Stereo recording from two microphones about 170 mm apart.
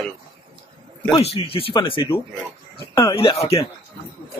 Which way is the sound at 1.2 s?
35° left (ahead or behind).